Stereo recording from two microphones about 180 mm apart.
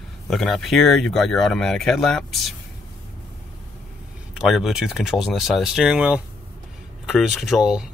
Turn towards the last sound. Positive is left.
turn(degrees=0)  # may be behind; listen again after turning